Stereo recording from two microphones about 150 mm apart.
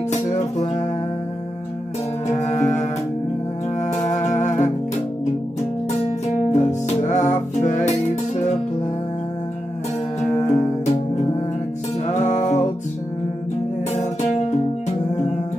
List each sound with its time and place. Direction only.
0.1 s music: 50° left (ahead or behind)
2.4 s music: 50° left (ahead or behind)
10.4 s music: 50° left (ahead or behind)
13.9 s music: 50° left (ahead or behind)